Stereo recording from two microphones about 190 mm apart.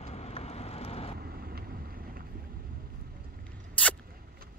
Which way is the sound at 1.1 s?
55° right (ahead or behind).